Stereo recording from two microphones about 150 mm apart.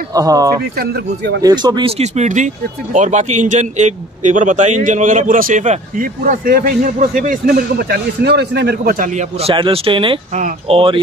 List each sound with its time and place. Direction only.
0.1 s speech: 25° right (ahead or behind)
0.7 s speech: 90° right
1.4 s speech: 30° right (ahead or behind); by 9.2 s 65° right (ahead or behind)
9.4 s speech: 35° right (ahead or behind)